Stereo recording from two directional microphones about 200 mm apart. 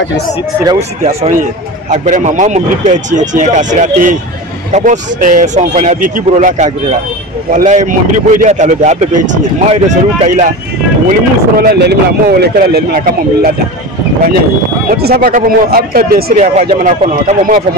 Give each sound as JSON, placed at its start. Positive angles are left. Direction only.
{"t": 0.7, "sound": "a man's voice", "side_deg": -35}
{"t": 11.1, "sound": "speech", "side_deg": -50}
{"t": 14.9, "sound": "speech", "side_deg": -50}
{"t": 16.3, "sound": "a man's voice", "side_deg": -35}